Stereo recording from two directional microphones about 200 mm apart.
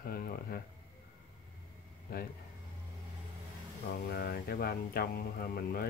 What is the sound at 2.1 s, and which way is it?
Speech, 50° left (ahead or behind).